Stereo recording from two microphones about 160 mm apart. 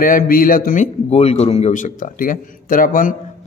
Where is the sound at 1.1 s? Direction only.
40° left (ahead or behind); by 3.2 s 60° left (ahead or behind).